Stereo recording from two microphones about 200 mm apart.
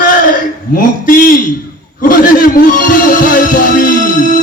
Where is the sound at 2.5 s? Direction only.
45° left (ahead or behind).